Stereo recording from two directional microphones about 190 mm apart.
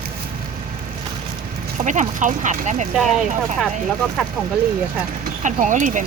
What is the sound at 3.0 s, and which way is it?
Speech, centre (ahead or behind).